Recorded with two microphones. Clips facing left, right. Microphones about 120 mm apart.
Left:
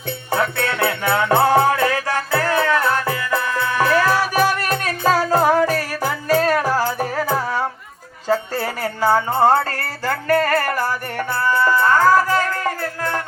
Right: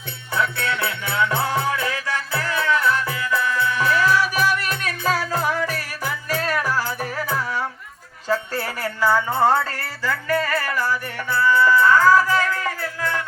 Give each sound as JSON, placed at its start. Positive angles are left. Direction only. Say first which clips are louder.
{"t": 0.3, "sound": "music", "louder": "left 3 dB", "side_deg": 50}
{"t": 10.0, "sound": "music", "louder": "left 5 dB", "side_deg": 65}